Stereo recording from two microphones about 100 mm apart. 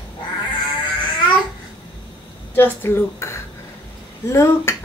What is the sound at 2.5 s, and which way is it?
Speech, 20° left (ahead or behind).